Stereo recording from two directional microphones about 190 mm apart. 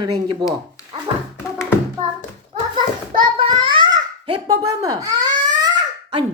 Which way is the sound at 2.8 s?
25° right (ahead or behind).